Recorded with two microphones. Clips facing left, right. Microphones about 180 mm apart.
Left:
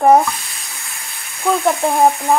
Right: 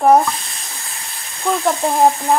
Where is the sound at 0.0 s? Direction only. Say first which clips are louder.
Left 1 dB; centre (ahead or behind).